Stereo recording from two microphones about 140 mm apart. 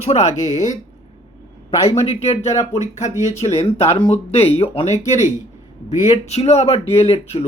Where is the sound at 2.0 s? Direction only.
50° left (ahead or behind).